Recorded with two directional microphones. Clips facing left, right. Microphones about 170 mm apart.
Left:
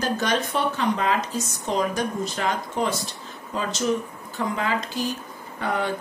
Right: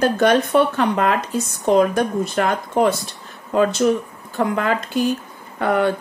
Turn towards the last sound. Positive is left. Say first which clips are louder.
# right 8 dB
turn(degrees=-60)  # may be behind; listen again after turning